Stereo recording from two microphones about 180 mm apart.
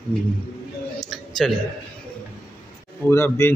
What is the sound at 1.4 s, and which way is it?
Speech, centre (ahead or behind).